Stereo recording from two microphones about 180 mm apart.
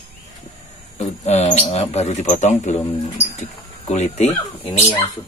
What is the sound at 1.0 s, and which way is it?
Speech, 35° left (ahead or behind).